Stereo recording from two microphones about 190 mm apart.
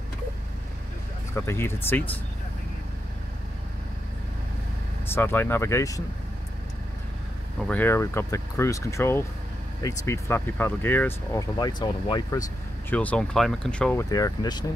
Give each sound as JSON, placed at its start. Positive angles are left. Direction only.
{"t": 1.3, "sound": "speech", "side_deg": 15}
{"t": 5.0, "sound": "speech", "side_deg": 10}
{"t": 7.5, "sound": "speech", "side_deg": 5}
{"t": 11.5, "sound": "speech", "side_deg": 20}
{"t": 12.9, "sound": "speech", "side_deg": 5}
{"t": 14.1, "sound": "speech", "side_deg": 20}